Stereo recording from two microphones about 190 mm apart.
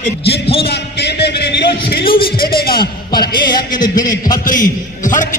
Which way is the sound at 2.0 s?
25° left (ahead or behind).